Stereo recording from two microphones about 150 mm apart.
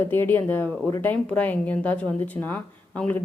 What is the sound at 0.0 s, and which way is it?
Speech, 15° left (ahead or behind).